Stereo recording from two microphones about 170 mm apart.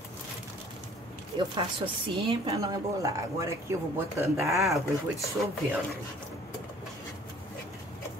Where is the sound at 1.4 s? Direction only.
30° right (ahead or behind).